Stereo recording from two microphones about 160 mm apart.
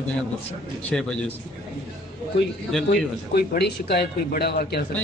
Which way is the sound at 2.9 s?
70° left (ahead or behind).